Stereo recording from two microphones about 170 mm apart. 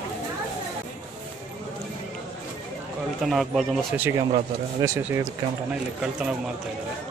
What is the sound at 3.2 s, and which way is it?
Speech, centre (ahead or behind).